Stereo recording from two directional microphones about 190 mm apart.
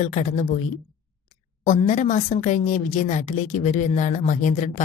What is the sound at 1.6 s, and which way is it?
A woman's voice, 40° left (ahead or behind).